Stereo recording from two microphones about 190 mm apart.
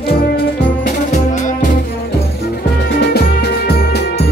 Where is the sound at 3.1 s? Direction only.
55° left (ahead or behind).